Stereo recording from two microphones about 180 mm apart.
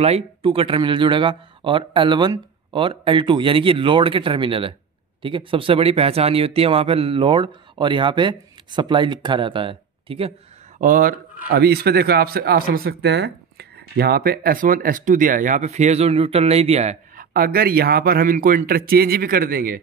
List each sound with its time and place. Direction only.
0.0 s speech: 35° right (ahead or behind)
10.8 s speech: 50° right (ahead or behind)
11.5 s speech: 65° right (ahead or behind); by 17.3 s 40° right (ahead or behind)
17.3 s a man's voice: 55° right (ahead or behind)